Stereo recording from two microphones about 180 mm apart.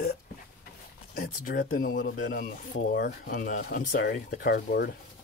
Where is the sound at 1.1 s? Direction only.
55° left (ahead or behind).